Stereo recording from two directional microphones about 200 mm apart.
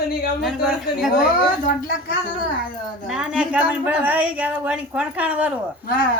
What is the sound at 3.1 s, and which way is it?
Speech, 5° right (ahead or behind).